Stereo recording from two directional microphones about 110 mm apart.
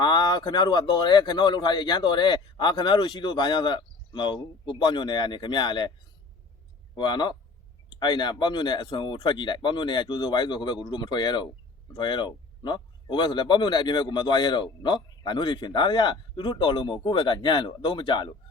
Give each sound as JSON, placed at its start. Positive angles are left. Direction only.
{"t": 0.0, "sound": "speech", "side_deg": 40}
{"t": 6.9, "sound": "speech", "side_deg": 45}